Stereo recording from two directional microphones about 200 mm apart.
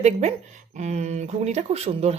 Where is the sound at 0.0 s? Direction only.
35° right (ahead or behind).